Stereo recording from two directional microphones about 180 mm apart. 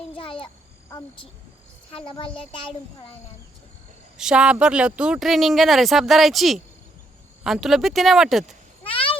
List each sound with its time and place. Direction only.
0.1 s a sound: 30° left (ahead or behind)
0.9 s speech: 20° left (ahead or behind)
4.2 s speech: 5° right (ahead or behind)
8.8 s cat: 30° left (ahead or behind)